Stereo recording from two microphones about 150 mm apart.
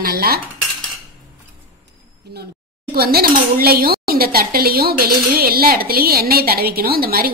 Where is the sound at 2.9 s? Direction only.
90° right.